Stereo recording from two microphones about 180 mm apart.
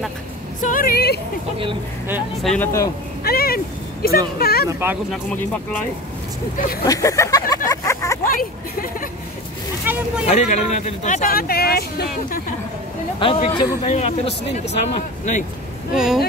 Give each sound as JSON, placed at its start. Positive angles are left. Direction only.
{"t": 0.6, "sound": "a woman's voice", "side_deg": 50}
{"t": 2.4, "sound": "speech", "side_deg": 10}
{"t": 3.3, "sound": "speech", "side_deg": 55}
{"t": 4.6, "sound": "speech", "side_deg": -15}
{"t": 5.1, "sound": "speech", "side_deg": 10}
{"t": 6.8, "sound": "vehicle", "side_deg": 20}
{"t": 8.4, "sound": "a sound", "side_deg": 50}
{"t": 9.9, "sound": "speech", "side_deg": -10}
{"t": 10.2, "sound": "speech", "side_deg": 40}
{"t": 13.2, "sound": "speech", "side_deg": 30}
{"t": 15.9, "sound": "speech", "side_deg": -5}